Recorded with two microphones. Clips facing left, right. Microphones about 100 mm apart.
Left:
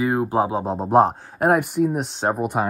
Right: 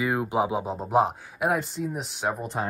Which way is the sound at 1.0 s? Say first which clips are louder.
Left 6 dB; 45° left (ahead or behind).